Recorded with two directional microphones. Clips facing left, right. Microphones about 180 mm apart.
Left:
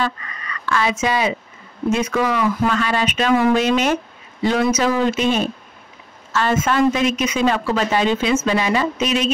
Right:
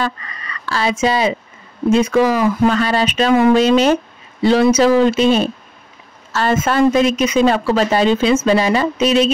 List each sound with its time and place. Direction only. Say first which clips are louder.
0.0 s speech: right 1 dB; 35° right (ahead or behind)